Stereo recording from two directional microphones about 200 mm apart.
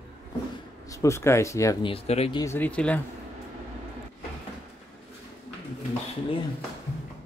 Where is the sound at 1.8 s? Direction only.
30° left (ahead or behind).